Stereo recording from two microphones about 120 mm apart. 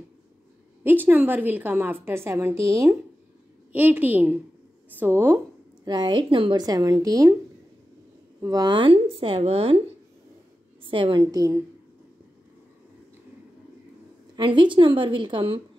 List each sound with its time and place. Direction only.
0.8 s a woman's voice: 15° right (ahead or behind)
3.7 s a woman's voice: 15° right (ahead or behind)
5.9 s a woman's voice: 40° right (ahead or behind)
6.6 s a woman's voice: 30° right (ahead or behind)
8.4 s a woman's voice: 30° right (ahead or behind); by 9.8 s 55° right (ahead or behind)
10.9 s a woman's voice: 45° right (ahead or behind)
14.3 s a woman's voice: 40° right (ahead or behind)